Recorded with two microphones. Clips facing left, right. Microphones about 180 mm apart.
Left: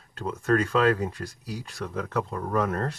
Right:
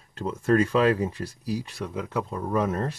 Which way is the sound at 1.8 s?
10° right (ahead or behind).